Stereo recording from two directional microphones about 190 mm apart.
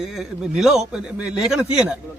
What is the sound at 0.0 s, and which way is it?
A man's voice, centre (ahead or behind).